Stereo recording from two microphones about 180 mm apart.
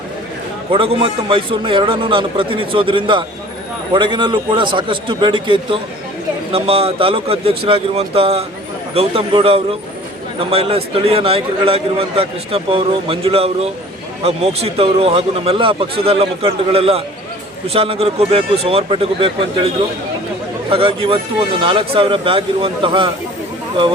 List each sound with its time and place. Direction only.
0.7 s a man's voice: 30° right (ahead or behind)